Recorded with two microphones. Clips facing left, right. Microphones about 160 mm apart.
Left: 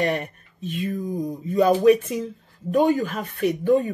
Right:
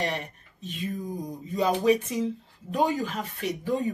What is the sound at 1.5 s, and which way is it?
Speech, 55° left (ahead or behind).